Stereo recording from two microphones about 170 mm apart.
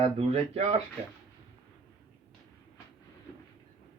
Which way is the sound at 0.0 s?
35° right (ahead or behind).